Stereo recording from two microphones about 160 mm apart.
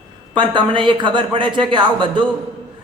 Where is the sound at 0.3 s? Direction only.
30° right (ahead or behind).